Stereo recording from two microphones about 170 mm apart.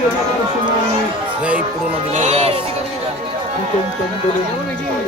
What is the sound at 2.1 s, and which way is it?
Speech, 40° right (ahead or behind).